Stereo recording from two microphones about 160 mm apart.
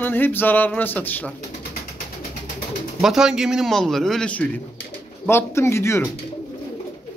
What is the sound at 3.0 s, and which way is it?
A man's voice, 5° right (ahead or behind).